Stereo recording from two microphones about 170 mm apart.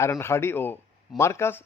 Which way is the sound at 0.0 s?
15° left (ahead or behind).